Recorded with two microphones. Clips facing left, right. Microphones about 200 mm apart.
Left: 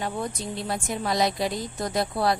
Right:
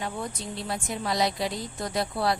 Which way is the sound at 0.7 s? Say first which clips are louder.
Left 2 dB; 50° left (ahead or behind).